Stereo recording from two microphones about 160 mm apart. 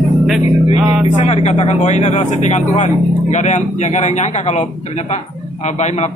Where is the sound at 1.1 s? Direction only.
45° left (ahead or behind).